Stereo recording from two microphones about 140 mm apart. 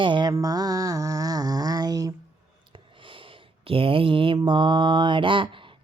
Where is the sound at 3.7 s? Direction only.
40° right (ahead or behind).